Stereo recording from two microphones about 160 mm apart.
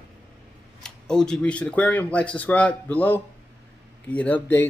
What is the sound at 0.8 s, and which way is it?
Speech, 5° left (ahead or behind).